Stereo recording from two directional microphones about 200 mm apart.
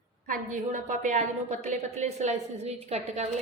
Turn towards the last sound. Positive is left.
turn(degrees=-35)  # may be behind; listen again after turning